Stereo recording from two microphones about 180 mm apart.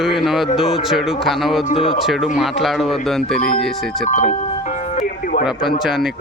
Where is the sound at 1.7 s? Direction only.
30° left (ahead or behind).